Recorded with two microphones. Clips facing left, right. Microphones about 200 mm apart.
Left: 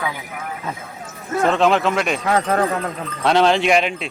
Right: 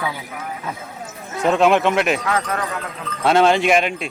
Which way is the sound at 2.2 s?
30° left (ahead or behind).